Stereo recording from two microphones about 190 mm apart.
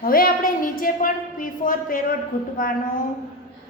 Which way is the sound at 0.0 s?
50° left (ahead or behind).